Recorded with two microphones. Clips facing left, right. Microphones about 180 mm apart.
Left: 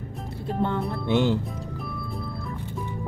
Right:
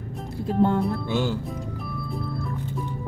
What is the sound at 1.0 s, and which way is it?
Music, 25° left (ahead or behind).